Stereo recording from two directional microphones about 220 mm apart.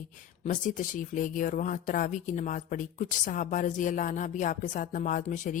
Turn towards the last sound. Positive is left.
turn(degrees=35)  # may be behind; listen again after turning